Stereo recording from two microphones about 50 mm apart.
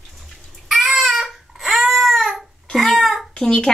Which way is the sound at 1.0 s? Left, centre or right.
Centre.